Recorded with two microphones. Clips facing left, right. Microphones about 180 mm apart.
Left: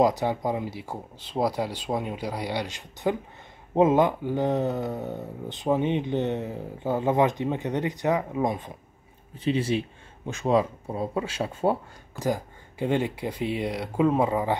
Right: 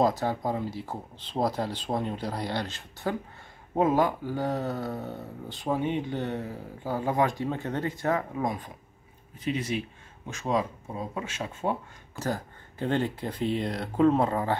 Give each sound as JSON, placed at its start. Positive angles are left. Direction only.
{"t": 0.0, "sound": "speech", "side_deg": 15}
{"t": 12.2, "sound": "speech", "side_deg": 10}